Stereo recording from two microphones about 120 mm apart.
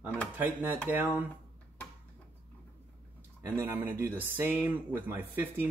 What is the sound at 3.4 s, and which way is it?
Speech, 20° right (ahead or behind).